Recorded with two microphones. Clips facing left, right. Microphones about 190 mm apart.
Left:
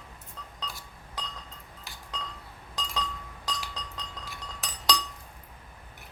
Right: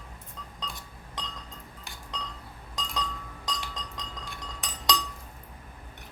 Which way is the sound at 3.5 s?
Centre (ahead or behind).